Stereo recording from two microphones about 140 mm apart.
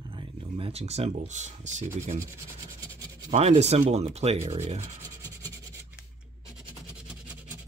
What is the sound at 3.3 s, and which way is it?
Rub, 50° right (ahead or behind).